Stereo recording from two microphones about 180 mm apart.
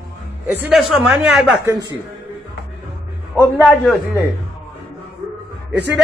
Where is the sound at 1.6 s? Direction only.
15° right (ahead or behind).